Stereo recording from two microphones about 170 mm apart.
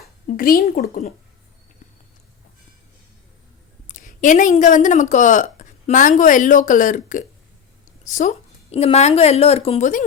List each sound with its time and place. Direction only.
0.3 s speech: 55° left (ahead or behind)
3.8 s a woman's voice: 50° left (ahead or behind)